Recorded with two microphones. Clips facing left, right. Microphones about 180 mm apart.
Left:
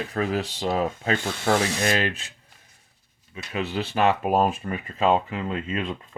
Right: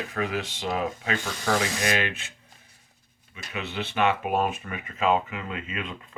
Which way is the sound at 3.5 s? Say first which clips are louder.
Left 4 dB; 35° left (ahead or behind).